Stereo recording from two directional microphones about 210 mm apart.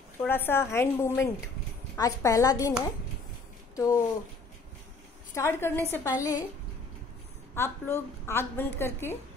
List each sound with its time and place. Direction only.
0.2 s a woman's voice: 10° left (ahead or behind)
3.7 s speech: 15° left (ahead or behind)
5.3 s a woman's voice: 10° left (ahead or behind)
7.5 s a woman's voice: 10° left (ahead or behind)